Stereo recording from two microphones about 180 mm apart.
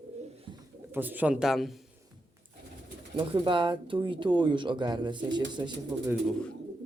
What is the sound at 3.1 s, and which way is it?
Speech, 25° right (ahead or behind).